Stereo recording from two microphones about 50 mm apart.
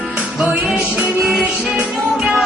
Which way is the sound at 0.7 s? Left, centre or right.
Centre.